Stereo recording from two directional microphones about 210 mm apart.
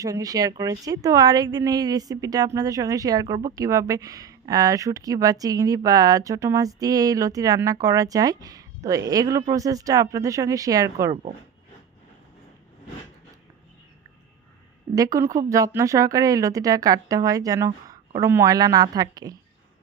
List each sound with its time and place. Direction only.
0.0 s speech: 15° right (ahead or behind)
14.9 s speech: 15° right (ahead or behind)